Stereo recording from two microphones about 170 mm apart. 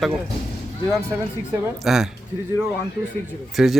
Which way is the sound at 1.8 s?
5° right (ahead or behind).